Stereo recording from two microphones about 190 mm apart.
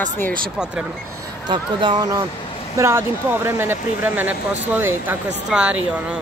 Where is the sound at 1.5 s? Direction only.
25° right (ahead or behind).